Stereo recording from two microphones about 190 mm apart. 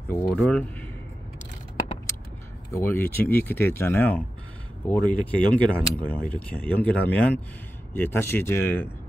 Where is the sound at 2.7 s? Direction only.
10° left (ahead or behind).